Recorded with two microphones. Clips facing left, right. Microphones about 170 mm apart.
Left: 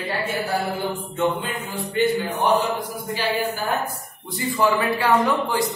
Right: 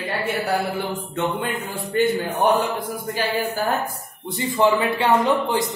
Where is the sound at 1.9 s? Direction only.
50° right (ahead or behind).